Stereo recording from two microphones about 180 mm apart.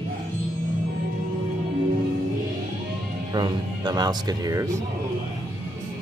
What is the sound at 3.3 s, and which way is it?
Speech, 25° right (ahead or behind).